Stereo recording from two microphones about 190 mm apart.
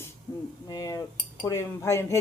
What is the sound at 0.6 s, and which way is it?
Speech, 20° left (ahead or behind).